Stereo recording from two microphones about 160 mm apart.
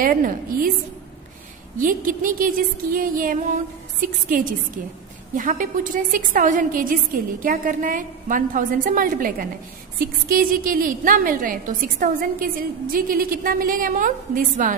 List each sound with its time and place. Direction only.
0.0 s a woman's voice: 60° right (ahead or behind)
1.8 s a woman's voice: 55° right (ahead or behind)